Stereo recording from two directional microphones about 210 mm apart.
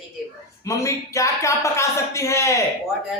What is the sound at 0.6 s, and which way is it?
Speech, 15° left (ahead or behind).